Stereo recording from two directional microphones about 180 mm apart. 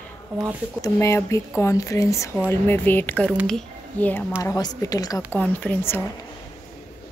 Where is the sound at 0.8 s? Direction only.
15° left (ahead or behind).